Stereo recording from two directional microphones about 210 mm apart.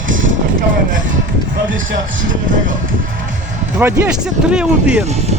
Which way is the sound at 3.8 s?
5° right (ahead or behind).